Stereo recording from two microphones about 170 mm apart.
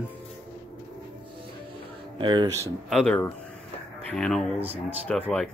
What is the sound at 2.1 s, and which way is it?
Speech, 30° right (ahead or behind).